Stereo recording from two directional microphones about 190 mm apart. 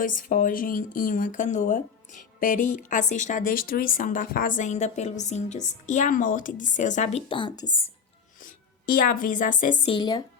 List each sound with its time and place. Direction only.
0.0 s speech: 45° left (ahead or behind)
7.3 s speech: 25° left (ahead or behind)
8.4 s a woman's voice: 45° left (ahead or behind)
9.8 s speech: 25° left (ahead or behind)